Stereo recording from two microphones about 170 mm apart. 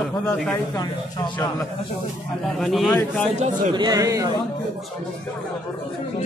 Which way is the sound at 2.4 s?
Centre (ahead or behind).